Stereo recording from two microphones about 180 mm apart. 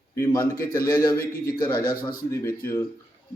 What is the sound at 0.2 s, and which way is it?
A man's voice, 20° left (ahead or behind).